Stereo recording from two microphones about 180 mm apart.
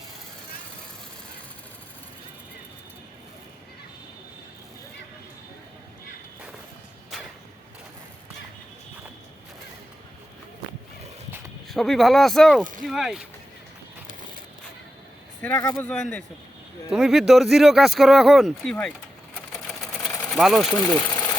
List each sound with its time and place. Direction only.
11.7 s speech: centre (ahead or behind)
15.4 s speech: 10° left (ahead or behind)
19.5 s sewing machine: centre (ahead or behind)
20.3 s speech: centre (ahead or behind)
20.8 s sewing machine: 20° left (ahead or behind)